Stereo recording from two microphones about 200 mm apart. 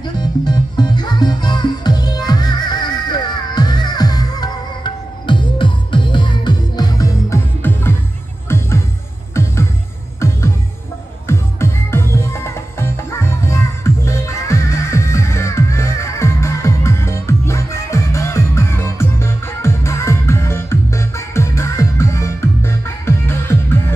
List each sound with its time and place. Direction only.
0.2 s music: 20° left (ahead or behind)